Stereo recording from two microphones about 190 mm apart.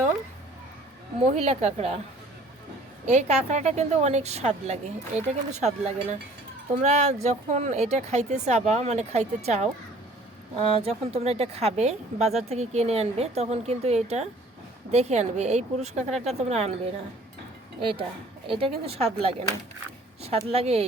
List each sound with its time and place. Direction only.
1.2 s a woman's voice: 35° right (ahead or behind)
3.1 s a woman's voice: 35° right (ahead or behind)
20.2 s a woman's voice: 30° right (ahead or behind)